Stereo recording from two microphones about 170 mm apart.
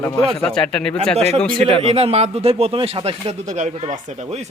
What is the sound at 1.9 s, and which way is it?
Speech, 35° right (ahead or behind).